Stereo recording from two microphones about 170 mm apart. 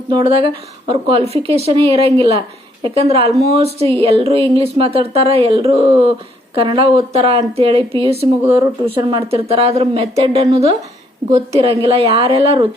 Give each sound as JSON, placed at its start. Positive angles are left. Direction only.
{"t": 0.1, "sound": "speech", "side_deg": -30}